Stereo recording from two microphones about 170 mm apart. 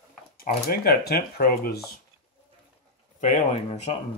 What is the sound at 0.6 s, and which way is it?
Speech, 65° left (ahead or behind).